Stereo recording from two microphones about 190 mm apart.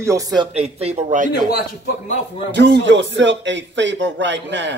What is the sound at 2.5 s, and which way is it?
Speech, 65° right (ahead or behind).